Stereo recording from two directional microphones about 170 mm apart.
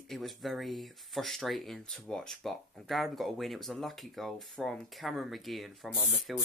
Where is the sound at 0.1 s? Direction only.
Centre (ahead or behind).